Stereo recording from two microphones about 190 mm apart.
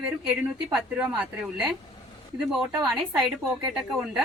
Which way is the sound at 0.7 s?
5° right (ahead or behind).